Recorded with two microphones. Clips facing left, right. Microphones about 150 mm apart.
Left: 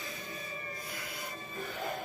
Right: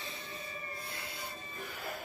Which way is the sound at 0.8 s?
30° right (ahead or behind).